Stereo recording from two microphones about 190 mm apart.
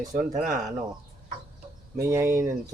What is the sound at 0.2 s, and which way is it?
Speech, 5° right (ahead or behind).